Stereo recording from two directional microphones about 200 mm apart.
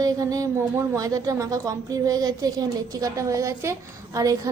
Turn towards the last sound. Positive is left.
turn(degrees=-15)  # may be behind; listen again after turning